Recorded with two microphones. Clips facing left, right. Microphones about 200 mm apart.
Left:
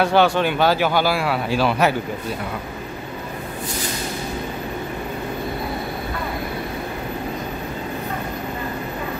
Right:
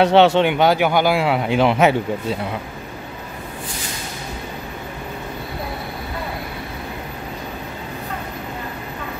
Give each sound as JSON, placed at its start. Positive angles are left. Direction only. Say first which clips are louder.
{"t": 0.0, "sound": "a man's voice", "louder": "right 4 dB", "side_deg": -25}